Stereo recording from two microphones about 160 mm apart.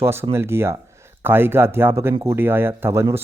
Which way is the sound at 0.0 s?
15° right (ahead or behind).